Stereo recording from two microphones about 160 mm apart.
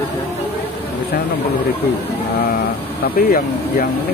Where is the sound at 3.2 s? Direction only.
65° left (ahead or behind).